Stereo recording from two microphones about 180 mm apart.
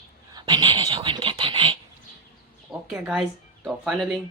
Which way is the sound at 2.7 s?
Centre (ahead or behind).